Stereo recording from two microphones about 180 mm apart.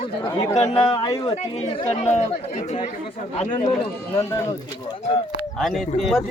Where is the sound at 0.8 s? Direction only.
25° left (ahead or behind).